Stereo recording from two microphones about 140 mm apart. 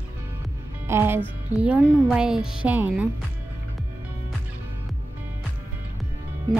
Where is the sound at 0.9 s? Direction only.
15° right (ahead or behind).